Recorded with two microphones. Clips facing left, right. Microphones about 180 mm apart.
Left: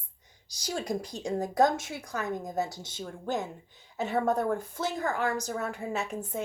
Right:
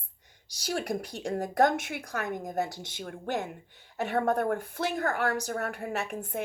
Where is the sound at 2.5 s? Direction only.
60° right (ahead or behind).